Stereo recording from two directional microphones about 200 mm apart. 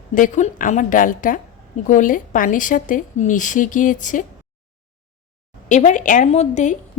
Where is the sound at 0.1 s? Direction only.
40° left (ahead or behind).